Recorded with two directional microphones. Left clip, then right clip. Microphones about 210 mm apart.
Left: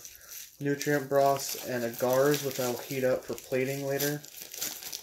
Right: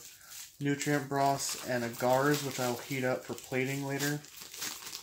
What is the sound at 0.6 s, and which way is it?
Speech, 35° right (ahead or behind).